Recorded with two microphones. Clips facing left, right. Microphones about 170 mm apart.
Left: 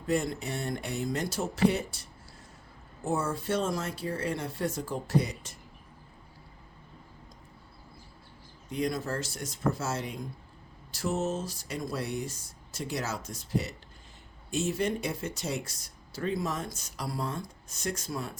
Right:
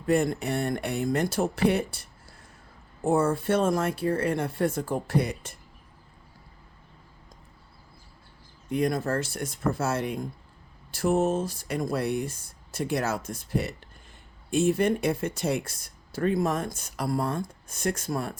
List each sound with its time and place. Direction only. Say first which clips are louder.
0.1 s speech: right 6 dB; 60° right (ahead or behind)
8.7 s speech: right 5 dB; 55° right (ahead or behind)